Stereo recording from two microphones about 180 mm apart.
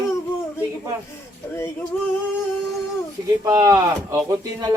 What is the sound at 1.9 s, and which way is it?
Speech, 5° left (ahead or behind).